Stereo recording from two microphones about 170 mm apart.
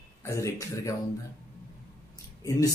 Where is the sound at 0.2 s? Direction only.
20° left (ahead or behind).